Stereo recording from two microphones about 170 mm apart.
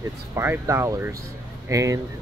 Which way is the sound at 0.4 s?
15° right (ahead or behind).